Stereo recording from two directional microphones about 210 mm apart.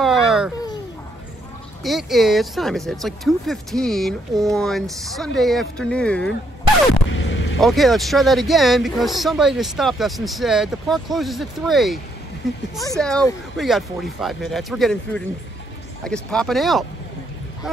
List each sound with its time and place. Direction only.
0.0 s babbling: centre (ahead or behind)
1.8 s speech: centre (ahead or behind)
7.1 s a sound: 65° left (ahead or behind)
7.6 s speech: centre (ahead or behind)